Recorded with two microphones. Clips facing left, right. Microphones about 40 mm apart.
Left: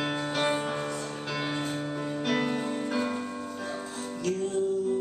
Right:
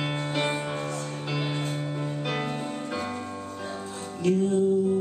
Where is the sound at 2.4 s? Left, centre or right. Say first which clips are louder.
Left 2 dB; centre.